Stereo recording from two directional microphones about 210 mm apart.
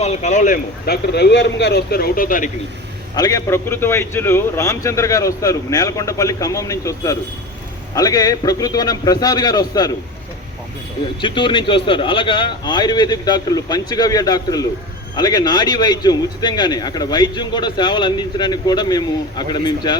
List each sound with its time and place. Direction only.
0.0 s speech: 30° left (ahead or behind)
3.2 s a man's voice: 15° left (ahead or behind)
11.2 s speech: 25° left (ahead or behind)